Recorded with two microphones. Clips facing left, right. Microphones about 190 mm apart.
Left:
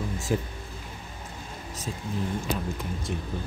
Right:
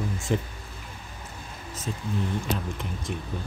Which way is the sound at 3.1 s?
40° left (ahead or behind).